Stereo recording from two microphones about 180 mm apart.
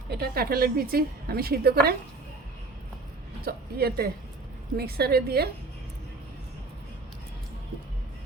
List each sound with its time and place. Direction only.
0.1 s a woman's voice: 60° right (ahead or behind)
3.4 s a woman's voice: 60° right (ahead or behind)